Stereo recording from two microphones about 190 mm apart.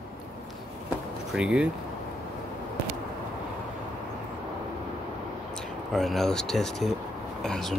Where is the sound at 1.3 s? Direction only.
5° right (ahead or behind).